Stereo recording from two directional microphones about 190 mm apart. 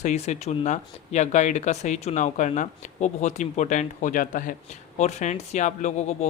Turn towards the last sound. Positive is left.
turn(degrees=40)  # may be behind; listen again after turning